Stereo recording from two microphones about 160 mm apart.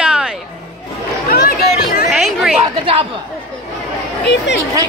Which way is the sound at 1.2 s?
70° left (ahead or behind).